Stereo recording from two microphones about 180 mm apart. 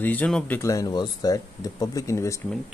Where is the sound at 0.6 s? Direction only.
20° left (ahead or behind).